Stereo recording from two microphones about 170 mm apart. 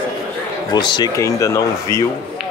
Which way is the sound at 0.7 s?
25° left (ahead or behind).